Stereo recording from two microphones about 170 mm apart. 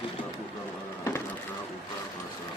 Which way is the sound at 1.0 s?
15° left (ahead or behind).